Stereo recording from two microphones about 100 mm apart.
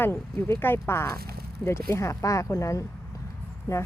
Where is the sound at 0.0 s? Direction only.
20° left (ahead or behind).